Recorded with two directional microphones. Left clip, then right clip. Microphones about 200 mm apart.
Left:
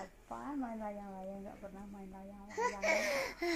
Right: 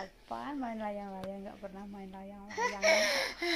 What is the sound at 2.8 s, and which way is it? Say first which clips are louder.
Child singing: right 8 dB; 5° left (ahead or behind).